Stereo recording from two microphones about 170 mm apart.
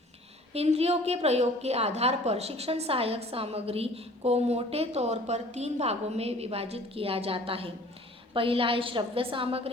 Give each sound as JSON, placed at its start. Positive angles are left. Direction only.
{"t": 0.5, "sound": "a woman's voice", "side_deg": -35}